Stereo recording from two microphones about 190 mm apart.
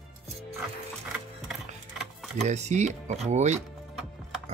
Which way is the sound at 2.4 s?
35° right (ahead or behind).